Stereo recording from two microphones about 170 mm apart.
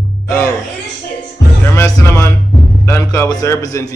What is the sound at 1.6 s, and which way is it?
Music, 15° left (ahead or behind).